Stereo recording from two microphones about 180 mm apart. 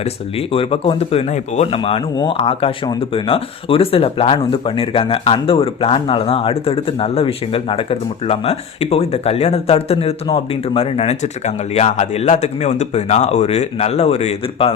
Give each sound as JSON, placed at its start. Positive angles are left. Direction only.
{"t": 0.0, "sound": "speech", "side_deg": 30}